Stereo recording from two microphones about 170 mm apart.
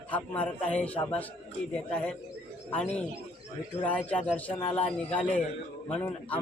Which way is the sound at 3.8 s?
10° left (ahead or behind).